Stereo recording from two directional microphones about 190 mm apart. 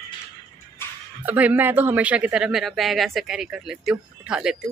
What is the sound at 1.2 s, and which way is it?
Speech, 10° right (ahead or behind).